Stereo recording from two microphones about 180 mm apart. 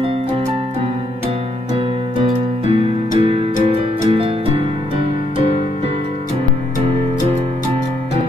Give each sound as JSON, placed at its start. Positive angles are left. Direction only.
{"t": 2.7, "sound": "keyboard", "side_deg": -30}
{"t": 4.1, "sound": "music", "side_deg": -30}